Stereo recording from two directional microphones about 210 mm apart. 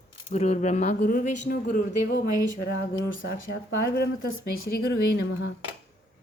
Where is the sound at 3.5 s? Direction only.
50° left (ahead or behind).